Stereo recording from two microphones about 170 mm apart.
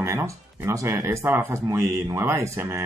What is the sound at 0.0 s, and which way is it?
Speech, 15° right (ahead or behind).